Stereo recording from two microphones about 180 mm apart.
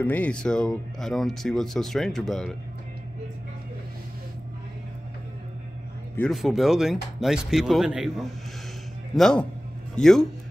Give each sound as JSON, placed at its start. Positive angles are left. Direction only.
{"t": 0.0, "sound": "speech", "side_deg": 10}
{"t": 6.1, "sound": "speech", "side_deg": 5}